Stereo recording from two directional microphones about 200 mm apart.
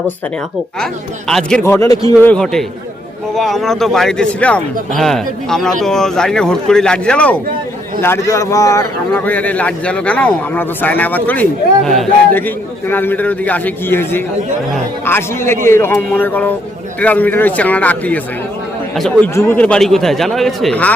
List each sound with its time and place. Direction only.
1.3 s a man's voice: centre (ahead or behind); by 2.3 s 20° left (ahead or behind)
2.3 s a man's voice: centre (ahead or behind)
19.3 s a man's voice: 10° left (ahead or behind)